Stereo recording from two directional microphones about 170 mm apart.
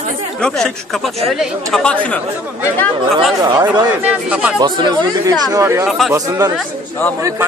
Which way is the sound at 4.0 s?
10° right (ahead or behind).